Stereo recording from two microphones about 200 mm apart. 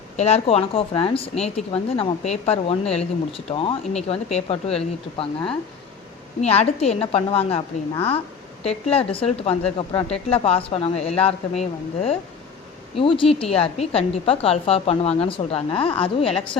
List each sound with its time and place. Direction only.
0.2 s speech: 30° left (ahead or behind)